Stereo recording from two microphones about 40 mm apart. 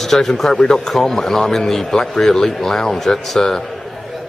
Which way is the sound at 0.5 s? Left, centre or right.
Left.